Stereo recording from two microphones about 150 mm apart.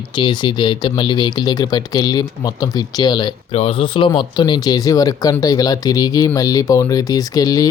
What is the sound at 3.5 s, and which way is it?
Speech, 40° left (ahead or behind).